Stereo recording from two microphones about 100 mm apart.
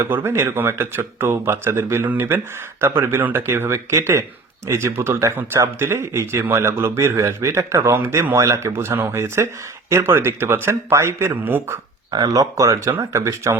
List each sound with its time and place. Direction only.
0.0 s speech: 20° right (ahead or behind)
12.1 s speech: 40° right (ahead or behind)